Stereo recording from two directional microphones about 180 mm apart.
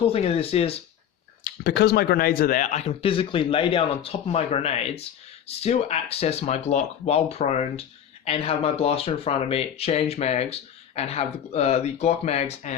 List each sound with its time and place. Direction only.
0.0 s speech: 35° left (ahead or behind)
1.5 s speech: 65° left (ahead or behind); by 12.7 s 35° left (ahead or behind)